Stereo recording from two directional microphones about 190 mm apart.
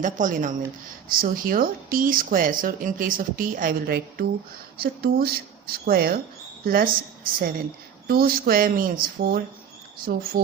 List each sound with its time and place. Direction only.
0.0 s speech: 40° right (ahead or behind)
8.0 s speech: 50° right (ahead or behind)